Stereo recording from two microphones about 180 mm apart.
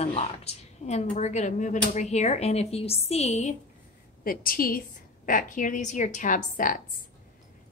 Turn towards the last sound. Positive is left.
turn(degrees=50)  # may be behind; listen again after turning